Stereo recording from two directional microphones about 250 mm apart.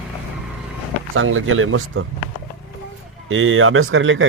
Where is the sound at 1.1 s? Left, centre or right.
Right.